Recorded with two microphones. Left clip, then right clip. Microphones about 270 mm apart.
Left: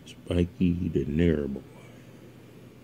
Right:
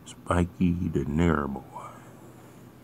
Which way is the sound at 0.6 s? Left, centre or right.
Right.